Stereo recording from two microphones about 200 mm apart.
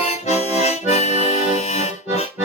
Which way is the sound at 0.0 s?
30° left (ahead or behind).